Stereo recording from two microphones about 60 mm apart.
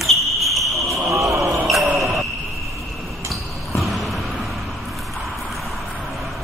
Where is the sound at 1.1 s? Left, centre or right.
Right.